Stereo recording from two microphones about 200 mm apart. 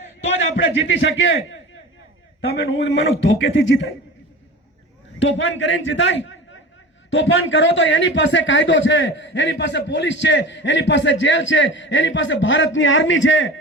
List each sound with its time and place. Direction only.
0.6 s a man's voice: 70° left (ahead or behind)
2.6 s speech: 60° left (ahead or behind)
5.2 s a man's voice: 70° left (ahead or behind)